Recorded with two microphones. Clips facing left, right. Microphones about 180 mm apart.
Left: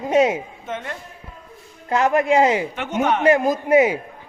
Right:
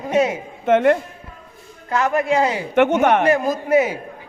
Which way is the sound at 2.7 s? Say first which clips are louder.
Right 7 dB; 60° right (ahead or behind).